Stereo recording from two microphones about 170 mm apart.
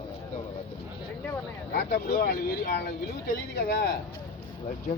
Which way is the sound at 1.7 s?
65° left (ahead or behind).